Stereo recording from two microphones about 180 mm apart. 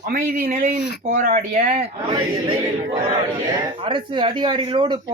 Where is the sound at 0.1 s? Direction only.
50° right (ahead or behind).